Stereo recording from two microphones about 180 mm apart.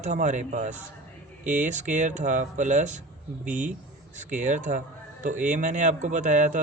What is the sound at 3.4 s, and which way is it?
Speech, 5° right (ahead or behind).